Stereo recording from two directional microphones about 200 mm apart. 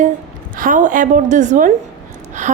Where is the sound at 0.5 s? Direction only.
40° right (ahead or behind).